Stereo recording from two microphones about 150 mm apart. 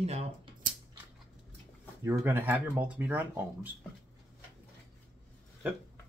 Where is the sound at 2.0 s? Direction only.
15° right (ahead or behind).